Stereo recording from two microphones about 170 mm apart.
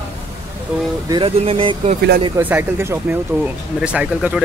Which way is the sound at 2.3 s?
15° right (ahead or behind).